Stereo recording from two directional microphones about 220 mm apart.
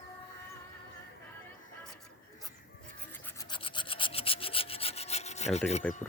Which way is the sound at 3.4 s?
20° left (ahead or behind).